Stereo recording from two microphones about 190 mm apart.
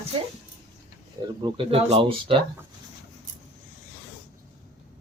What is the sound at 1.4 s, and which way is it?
Speech, 30° right (ahead or behind).